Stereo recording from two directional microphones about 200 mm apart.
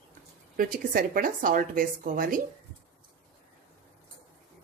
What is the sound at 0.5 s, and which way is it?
A woman's voice, 45° right (ahead or behind).